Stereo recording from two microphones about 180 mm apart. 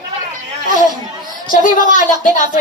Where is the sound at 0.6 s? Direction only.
50° left (ahead or behind).